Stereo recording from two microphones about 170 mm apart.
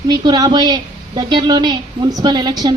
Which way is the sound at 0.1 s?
25° right (ahead or behind).